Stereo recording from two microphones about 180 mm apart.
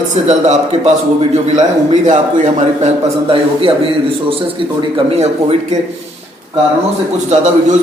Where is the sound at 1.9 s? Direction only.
40° right (ahead or behind).